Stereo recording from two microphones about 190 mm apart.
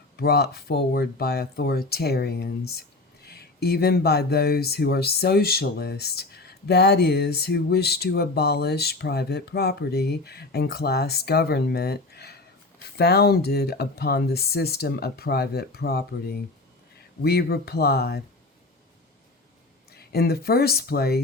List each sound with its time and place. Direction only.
0.2 s speech: 55° left (ahead or behind)
20.1 s speech: 55° left (ahead or behind)